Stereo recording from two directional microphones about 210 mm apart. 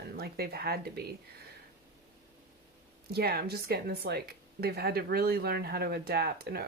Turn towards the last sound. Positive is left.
turn(degrees=-45)  # may be behind; listen again after turning